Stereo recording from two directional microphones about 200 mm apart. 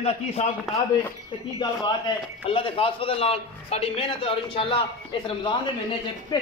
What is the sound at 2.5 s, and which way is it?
A man's voice, 25° left (ahead or behind).